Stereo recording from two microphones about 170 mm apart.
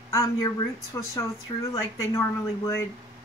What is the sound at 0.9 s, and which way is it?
Speech, 20° left (ahead or behind).